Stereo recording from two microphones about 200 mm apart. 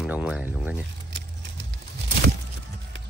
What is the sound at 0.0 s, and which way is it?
Speech, 5° right (ahead or behind).